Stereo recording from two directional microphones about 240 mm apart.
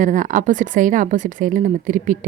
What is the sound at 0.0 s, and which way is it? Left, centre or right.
Speech, right.